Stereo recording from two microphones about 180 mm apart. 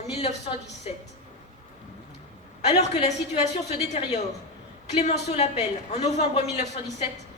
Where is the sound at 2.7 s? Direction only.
35° left (ahead or behind).